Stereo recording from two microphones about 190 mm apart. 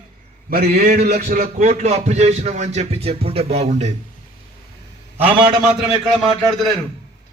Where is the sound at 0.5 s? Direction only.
55° right (ahead or behind); by 3.9 s 35° right (ahead or behind).